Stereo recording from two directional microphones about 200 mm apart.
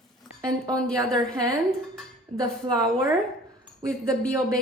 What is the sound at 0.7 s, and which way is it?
Speech, 5° left (ahead or behind).